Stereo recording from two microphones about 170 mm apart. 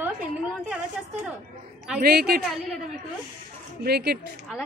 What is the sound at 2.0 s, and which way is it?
Speech, 65° right (ahead or behind).